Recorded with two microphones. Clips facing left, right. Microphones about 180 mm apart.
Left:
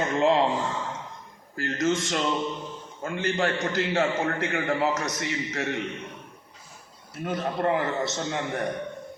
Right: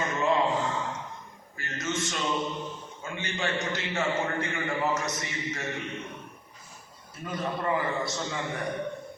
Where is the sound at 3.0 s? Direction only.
55° left (ahead or behind).